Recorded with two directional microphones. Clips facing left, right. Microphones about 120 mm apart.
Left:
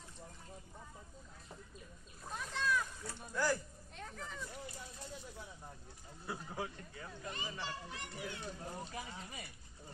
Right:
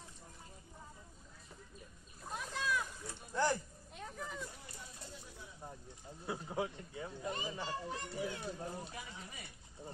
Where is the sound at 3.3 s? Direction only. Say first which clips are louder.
Right 2 dB; 30° right (ahead or behind).